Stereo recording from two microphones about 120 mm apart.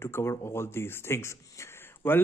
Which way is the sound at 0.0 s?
20° left (ahead or behind).